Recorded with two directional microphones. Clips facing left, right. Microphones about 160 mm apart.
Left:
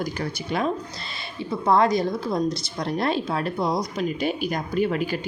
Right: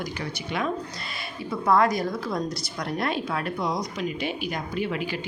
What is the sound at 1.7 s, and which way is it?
Speech, 25° left (ahead or behind).